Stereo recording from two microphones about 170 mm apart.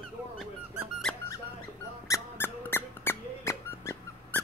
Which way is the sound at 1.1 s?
5° left (ahead or behind).